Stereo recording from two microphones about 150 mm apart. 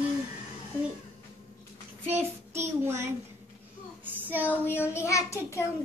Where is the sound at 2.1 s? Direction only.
15° right (ahead or behind).